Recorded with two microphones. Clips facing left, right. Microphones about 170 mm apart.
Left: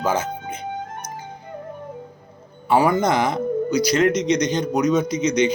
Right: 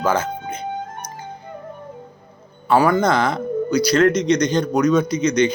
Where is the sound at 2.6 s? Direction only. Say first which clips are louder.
Right 2 dB; 20° left (ahead or behind).